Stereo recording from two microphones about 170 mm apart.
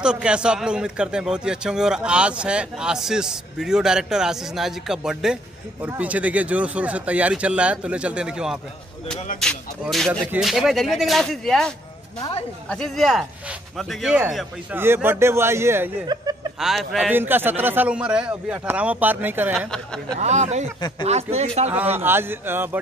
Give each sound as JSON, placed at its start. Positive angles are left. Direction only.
{"t": 0.0, "sound": "a man's voice", "side_deg": -5}
{"t": 16.1, "sound": "chuckle", "side_deg": -25}
{"t": 16.5, "sound": "a man's voice", "side_deg": 0}
{"t": 17.1, "sound": "a man's voice", "side_deg": -10}
{"t": 19.7, "sound": "a man's voice", "side_deg": 5}
{"t": 20.2, "sound": "speech", "side_deg": -40}
{"t": 21.9, "sound": "a man's voice", "side_deg": -15}